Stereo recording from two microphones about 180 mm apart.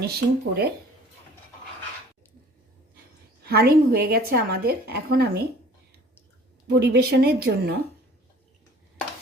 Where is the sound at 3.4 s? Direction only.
60° right (ahead or behind).